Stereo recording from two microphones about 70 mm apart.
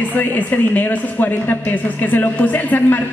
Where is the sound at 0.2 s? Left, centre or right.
Left.